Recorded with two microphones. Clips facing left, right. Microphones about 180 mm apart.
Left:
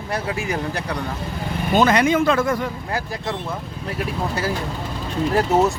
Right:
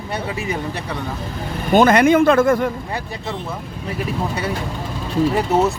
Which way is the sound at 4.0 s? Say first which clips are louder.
Right 1 dB; centre (ahead or behind).